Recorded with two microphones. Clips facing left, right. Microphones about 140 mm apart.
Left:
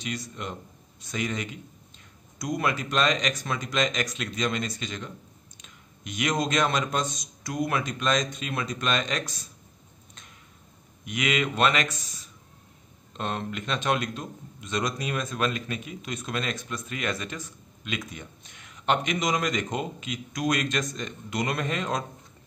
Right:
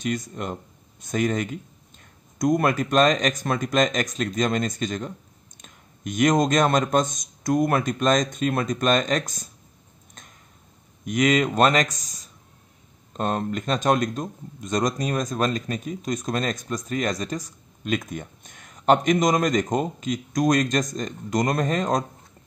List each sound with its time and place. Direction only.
0.0 s a man's voice: 50° right (ahead or behind)
11.1 s a man's voice: 45° right (ahead or behind)